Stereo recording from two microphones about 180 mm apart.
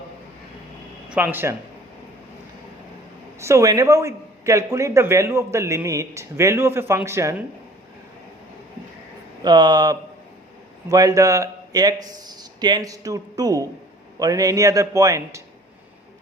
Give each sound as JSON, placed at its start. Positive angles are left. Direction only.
{"t": 1.1, "sound": "a man's voice", "side_deg": -10}
{"t": 3.4, "sound": "a man's voice", "side_deg": -15}
{"t": 9.4, "sound": "a man's voice", "side_deg": -25}